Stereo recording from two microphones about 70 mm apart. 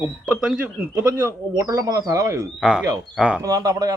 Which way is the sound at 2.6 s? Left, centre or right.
Centre.